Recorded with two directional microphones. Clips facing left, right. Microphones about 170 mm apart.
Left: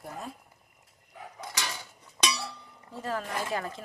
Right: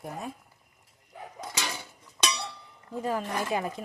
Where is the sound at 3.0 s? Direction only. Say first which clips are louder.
Right 3 dB; 15° right (ahead or behind).